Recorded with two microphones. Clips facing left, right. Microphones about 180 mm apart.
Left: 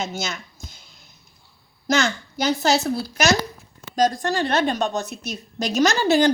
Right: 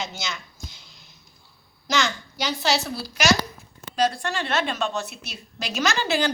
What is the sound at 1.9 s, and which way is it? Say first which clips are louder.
A woman's voice: left 4 dB; 45° left (ahead or behind).